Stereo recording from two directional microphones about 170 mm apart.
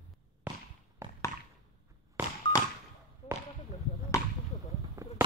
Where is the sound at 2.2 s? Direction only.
10° right (ahead or behind).